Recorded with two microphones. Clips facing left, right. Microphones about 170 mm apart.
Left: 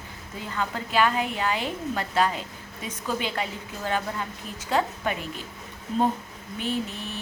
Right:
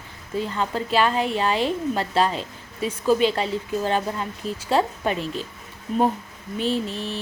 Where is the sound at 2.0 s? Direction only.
30° right (ahead or behind).